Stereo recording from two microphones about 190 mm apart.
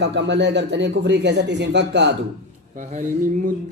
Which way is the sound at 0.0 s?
65° right (ahead or behind).